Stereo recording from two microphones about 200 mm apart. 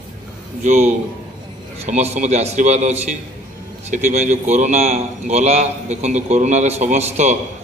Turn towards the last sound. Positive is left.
turn(degrees=-35)  # may be behind; listen again after turning